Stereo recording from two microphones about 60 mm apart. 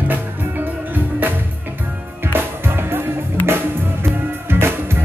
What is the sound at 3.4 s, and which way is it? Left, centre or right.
Music, right.